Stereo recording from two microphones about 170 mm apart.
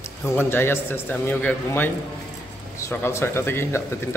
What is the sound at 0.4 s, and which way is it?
A man's voice, 15° left (ahead or behind).